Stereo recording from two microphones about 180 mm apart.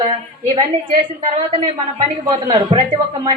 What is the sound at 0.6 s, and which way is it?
Speech, 30° right (ahead or behind).